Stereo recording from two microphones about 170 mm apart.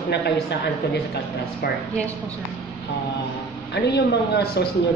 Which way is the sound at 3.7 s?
75° left (ahead or behind).